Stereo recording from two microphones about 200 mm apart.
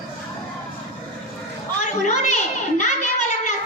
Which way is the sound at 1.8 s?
35° left (ahead or behind).